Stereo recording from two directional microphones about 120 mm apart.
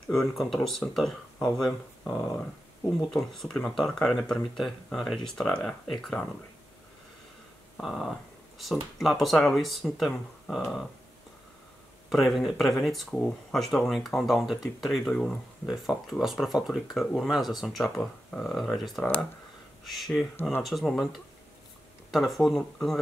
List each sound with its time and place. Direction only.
0.1 s speech: centre (ahead or behind)
1.7 s speech: 20° left (ahead or behind)
3.1 s speech: 5° left (ahead or behind)
7.8 s speech: centre (ahead or behind)
12.1 s speech: centre (ahead or behind)
22.1 s speech: centre (ahead or behind)